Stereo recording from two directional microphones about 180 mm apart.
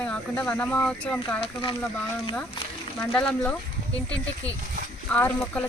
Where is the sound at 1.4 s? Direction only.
30° left (ahead or behind).